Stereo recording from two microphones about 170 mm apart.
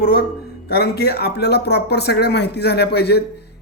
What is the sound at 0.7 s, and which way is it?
Speech, 70° left (ahead or behind).